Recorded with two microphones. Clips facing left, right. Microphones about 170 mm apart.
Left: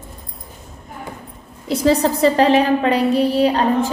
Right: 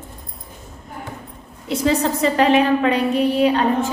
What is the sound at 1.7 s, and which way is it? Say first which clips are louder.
A woman's voice: left 3 dB; 35° left (ahead or behind).